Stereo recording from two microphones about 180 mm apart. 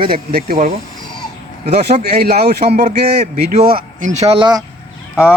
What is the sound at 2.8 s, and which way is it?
Speech, 40° right (ahead or behind).